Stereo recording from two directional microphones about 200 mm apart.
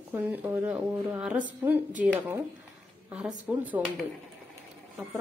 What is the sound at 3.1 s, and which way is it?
Speech, 5° right (ahead or behind).